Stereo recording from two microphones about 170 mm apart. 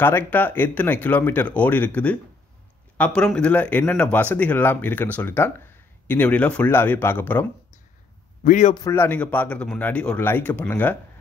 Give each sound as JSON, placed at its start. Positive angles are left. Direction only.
{"t": 0.0, "sound": "speech", "side_deg": 10}
{"t": 8.5, "sound": "a man's voice", "side_deg": 45}
{"t": 8.7, "sound": "speech", "side_deg": 15}